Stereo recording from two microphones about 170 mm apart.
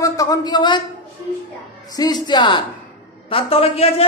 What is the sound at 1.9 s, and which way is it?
A man's voice, 25° left (ahead or behind).